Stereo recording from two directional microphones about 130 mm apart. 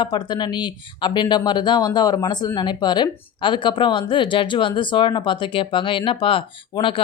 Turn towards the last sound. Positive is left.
turn(degrees=40)  # may be behind; listen again after turning